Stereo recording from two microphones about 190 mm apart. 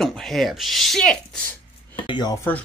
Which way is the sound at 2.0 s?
25° left (ahead or behind).